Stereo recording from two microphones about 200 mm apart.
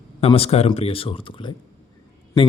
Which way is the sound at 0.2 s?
30° left (ahead or behind).